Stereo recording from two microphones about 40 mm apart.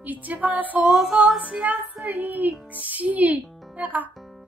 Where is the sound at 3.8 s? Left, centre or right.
Right.